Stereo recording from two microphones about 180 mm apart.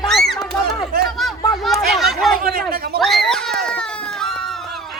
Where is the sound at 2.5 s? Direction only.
60° right (ahead or behind).